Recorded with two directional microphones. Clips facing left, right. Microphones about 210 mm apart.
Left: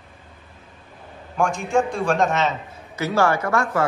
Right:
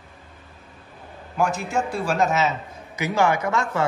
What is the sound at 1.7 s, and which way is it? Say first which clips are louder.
Speech: left 4 dB; 5° right (ahead or behind).